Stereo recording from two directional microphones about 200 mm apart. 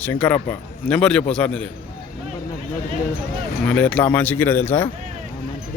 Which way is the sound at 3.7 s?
5° left (ahead or behind).